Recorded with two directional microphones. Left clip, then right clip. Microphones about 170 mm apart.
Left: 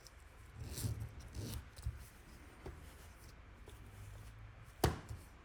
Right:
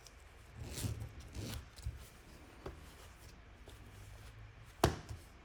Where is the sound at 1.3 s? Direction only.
Centre (ahead or behind).